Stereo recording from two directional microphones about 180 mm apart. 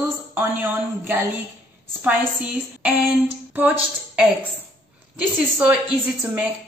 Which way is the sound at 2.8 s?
5° right (ahead or behind).